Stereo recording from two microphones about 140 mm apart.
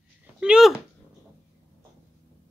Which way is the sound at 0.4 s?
5° right (ahead or behind).